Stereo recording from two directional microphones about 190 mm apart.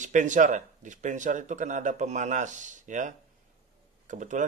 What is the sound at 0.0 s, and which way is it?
Speech, 40° right (ahead or behind).